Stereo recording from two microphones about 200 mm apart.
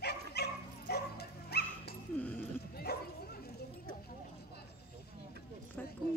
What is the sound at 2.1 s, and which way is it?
Dog, 5° left (ahead or behind).